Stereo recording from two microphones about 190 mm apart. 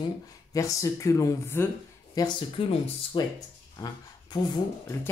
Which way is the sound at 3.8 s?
20° left (ahead or behind).